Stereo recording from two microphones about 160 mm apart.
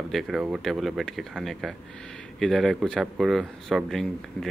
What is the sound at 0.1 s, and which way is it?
Speech, centre (ahead or behind).